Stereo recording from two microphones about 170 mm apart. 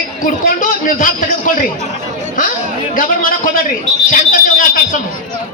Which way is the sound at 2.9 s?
50° left (ahead or behind).